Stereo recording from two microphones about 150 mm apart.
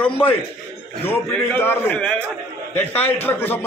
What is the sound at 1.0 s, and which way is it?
A man's voice, 15° left (ahead or behind).